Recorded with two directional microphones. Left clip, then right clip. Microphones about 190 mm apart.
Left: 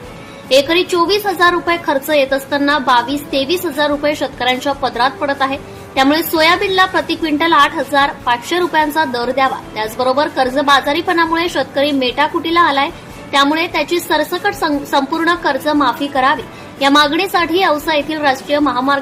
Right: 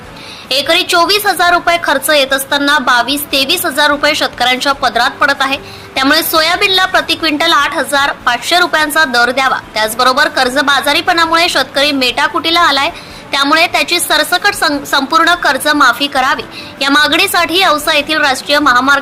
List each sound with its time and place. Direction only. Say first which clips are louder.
0.5 s a woman's voice: right 2 dB; 5° right (ahead or behind)